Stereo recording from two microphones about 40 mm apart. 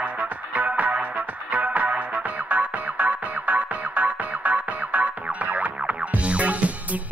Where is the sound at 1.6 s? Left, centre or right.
Right.